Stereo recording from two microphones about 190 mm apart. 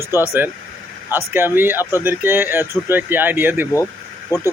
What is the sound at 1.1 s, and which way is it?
Speech, 10° right (ahead or behind).